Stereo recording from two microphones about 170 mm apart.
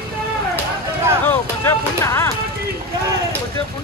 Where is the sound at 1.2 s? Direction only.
10° left (ahead or behind).